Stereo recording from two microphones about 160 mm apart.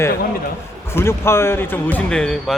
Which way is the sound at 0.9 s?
15° left (ahead or behind).